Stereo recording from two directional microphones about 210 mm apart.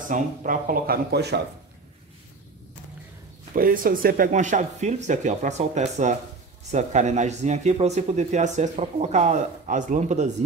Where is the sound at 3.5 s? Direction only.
40° right (ahead or behind).